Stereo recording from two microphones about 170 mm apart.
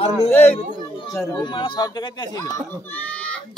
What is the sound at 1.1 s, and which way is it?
Speech, 20° left (ahead or behind).